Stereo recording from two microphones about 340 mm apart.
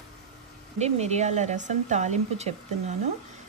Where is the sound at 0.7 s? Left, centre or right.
Centre.